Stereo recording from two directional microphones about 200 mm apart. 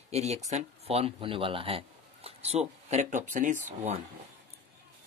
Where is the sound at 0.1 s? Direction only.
35° right (ahead or behind).